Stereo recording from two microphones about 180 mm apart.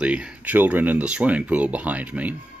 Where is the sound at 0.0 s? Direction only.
5° right (ahead or behind).